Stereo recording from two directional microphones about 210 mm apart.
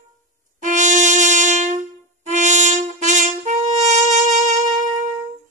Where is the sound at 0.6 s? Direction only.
35° right (ahead or behind).